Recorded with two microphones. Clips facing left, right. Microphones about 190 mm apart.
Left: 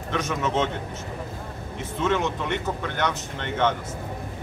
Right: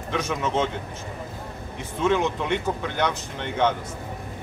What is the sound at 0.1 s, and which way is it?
Speech, 15° right (ahead or behind).